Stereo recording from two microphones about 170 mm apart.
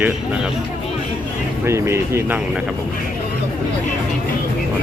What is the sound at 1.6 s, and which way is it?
Speech, 15° right (ahead or behind).